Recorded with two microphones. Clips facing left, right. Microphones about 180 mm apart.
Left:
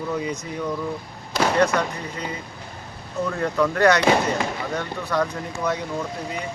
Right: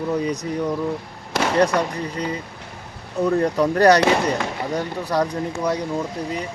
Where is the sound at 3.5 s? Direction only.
35° right (ahead or behind).